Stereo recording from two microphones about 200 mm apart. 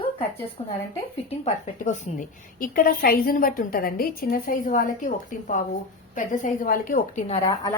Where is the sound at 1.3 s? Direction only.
35° left (ahead or behind).